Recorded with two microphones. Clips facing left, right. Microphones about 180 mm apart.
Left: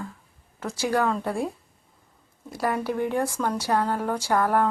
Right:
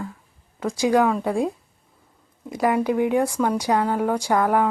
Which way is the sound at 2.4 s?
15° right (ahead or behind).